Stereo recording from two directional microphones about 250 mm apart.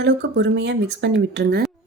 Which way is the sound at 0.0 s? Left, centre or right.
Right.